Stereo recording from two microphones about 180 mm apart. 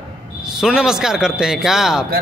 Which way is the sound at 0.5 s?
5° right (ahead or behind).